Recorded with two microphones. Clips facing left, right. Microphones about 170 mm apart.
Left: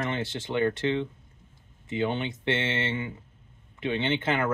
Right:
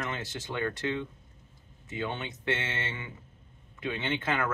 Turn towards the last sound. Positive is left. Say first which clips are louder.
# left 4 dB
turn(degrees=25)  # may be behind; listen again after turning